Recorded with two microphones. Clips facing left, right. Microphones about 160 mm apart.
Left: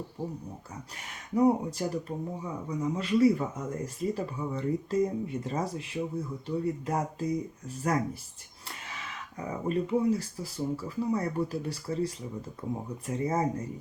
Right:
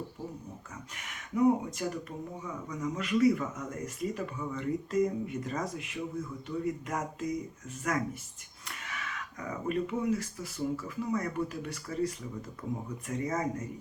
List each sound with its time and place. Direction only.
0.9 s speech: 30° left (ahead or behind)